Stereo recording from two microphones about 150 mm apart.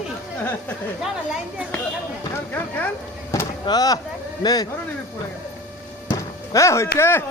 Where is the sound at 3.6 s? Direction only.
25° left (ahead or behind).